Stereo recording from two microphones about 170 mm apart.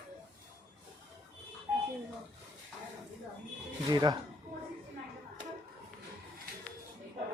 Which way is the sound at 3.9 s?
25° right (ahead or behind).